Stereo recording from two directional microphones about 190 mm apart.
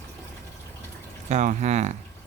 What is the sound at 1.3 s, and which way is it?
Speech, 40° right (ahead or behind).